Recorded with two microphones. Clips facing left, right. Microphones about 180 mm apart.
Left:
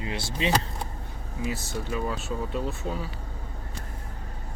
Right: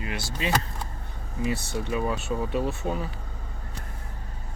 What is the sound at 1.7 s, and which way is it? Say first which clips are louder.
Speech: right 3 dB; centre (ahead or behind).